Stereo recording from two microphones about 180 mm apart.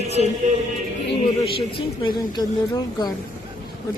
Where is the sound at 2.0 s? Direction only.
25° left (ahead or behind).